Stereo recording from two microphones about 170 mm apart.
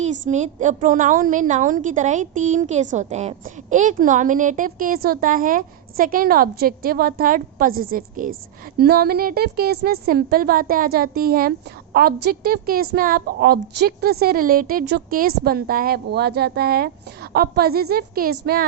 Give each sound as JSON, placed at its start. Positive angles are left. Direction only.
{"t": 0.0, "sound": "a woman's voice", "side_deg": -45}
{"t": 8.8, "sound": "a woman's voice", "side_deg": -65}